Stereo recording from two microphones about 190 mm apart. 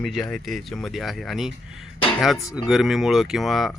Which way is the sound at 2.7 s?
Centre (ahead or behind).